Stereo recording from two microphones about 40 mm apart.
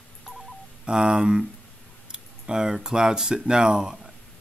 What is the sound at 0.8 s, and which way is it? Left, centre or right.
Speech, right.